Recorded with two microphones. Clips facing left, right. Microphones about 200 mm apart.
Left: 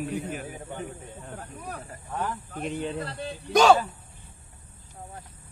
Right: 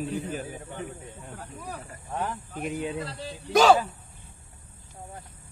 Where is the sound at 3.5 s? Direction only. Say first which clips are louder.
Even; centre (ahead or behind).